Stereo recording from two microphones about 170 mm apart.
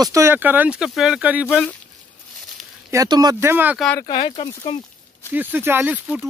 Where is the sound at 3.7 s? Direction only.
Centre (ahead or behind).